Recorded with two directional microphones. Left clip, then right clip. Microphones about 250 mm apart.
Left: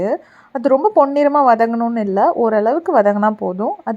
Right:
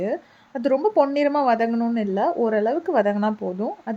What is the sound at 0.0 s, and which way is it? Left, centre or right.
A woman's voice, centre.